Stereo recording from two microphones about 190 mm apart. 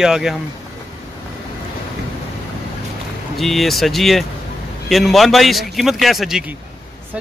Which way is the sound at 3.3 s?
Centre (ahead or behind).